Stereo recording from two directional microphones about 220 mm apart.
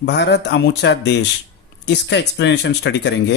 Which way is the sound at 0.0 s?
50° left (ahead or behind).